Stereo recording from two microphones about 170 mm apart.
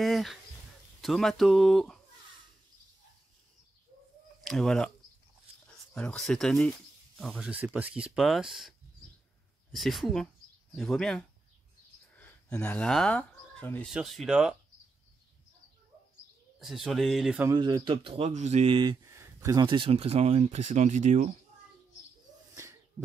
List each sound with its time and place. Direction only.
0.0 s speech: centre (ahead or behind)
4.4 s speech: centre (ahead or behind)
5.9 s speech: 5° left (ahead or behind)
13.9 s speech: centre (ahead or behind)
16.5 s speech: centre (ahead or behind)
17.6 s speech: 25° right (ahead or behind)
19.0 s speech: 15° right (ahead or behind); by 21.3 s 45° right (ahead or behind)
22.6 s a sound: 15° right (ahead or behind)